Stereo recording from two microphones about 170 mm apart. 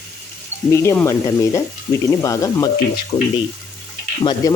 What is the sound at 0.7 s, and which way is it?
Speech, 15° left (ahead or behind).